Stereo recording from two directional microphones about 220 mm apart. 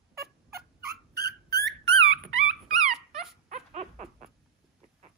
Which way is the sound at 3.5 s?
30° right (ahead or behind).